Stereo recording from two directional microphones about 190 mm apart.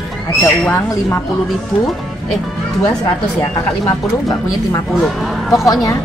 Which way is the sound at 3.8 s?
15° left (ahead or behind).